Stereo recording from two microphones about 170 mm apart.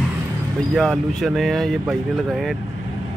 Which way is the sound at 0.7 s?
5° left (ahead or behind).